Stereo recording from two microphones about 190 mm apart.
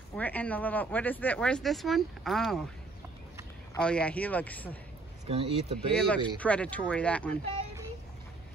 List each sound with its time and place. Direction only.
0.1 s speech: 10° left (ahead or behind)
3.7 s speech: 5° left (ahead or behind)
5.2 s speech: 35° right (ahead or behind)
5.9 s speech: 5° left (ahead or behind)